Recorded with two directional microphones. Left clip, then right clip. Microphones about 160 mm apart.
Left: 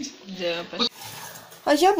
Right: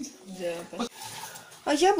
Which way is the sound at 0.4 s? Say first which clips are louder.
Left 7 dB; 5° right (ahead or behind).